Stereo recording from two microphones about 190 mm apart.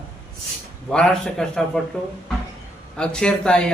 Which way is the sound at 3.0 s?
5° left (ahead or behind).